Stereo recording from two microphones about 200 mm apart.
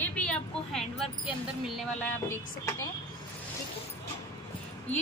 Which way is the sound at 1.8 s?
10° left (ahead or behind).